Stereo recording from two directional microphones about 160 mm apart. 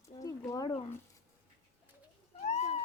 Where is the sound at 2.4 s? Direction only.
40° left (ahead or behind).